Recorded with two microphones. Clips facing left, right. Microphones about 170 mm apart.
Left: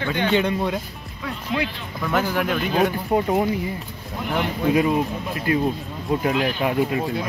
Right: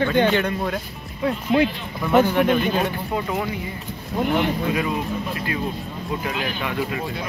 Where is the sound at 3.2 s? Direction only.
35° left (ahead or behind).